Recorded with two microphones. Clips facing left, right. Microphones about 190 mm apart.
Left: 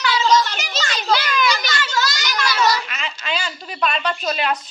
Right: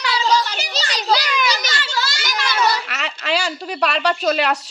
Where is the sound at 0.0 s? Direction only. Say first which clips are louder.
Left 2 dB; 35° right (ahead or behind).